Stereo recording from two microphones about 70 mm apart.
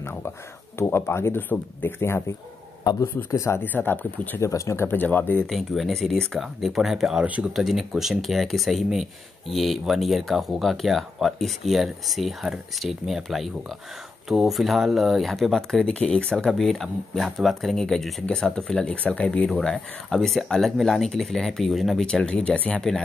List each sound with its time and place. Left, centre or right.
0.7 s speech: left
2.9 s a man's voice: left
3.3 s speech: left
3.6 s speech: left
4.4 s speech: left
4.9 s speech: left
5.5 s speech: centre
7.2 s speech: right
7.5 s speech: centre
15.8 s speech: centre
16.4 s speech: centre
22.0 s speech: centre